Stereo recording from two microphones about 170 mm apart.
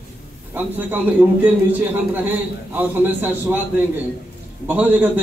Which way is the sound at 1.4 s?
10° right (ahead or behind).